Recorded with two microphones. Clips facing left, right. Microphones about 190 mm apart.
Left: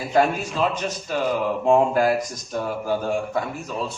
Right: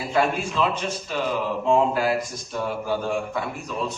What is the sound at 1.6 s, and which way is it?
Mantra, 50° left (ahead or behind).